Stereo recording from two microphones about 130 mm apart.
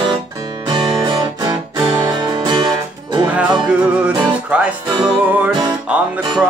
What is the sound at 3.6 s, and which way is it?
Music, 10° right (ahead or behind).